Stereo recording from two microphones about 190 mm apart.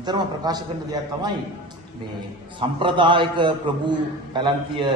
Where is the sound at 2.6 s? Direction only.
25° right (ahead or behind).